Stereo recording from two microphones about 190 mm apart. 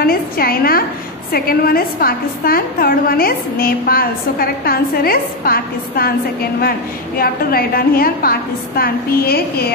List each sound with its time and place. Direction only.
0.0 s a woman's voice: 50° left (ahead or behind)
7.2 s a woman's voice: 50° left (ahead or behind)